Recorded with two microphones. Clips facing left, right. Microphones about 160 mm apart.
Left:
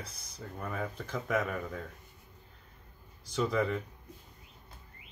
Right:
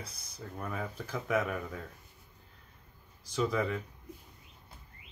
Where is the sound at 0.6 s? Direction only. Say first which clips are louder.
Left 1 dB; centre (ahead or behind).